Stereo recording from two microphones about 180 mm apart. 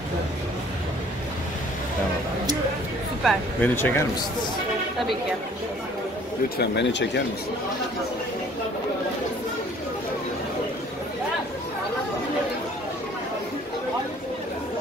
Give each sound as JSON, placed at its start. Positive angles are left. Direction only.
{"t": 3.3, "sound": "speech", "side_deg": 10}
{"t": 6.6, "sound": "speech", "side_deg": 75}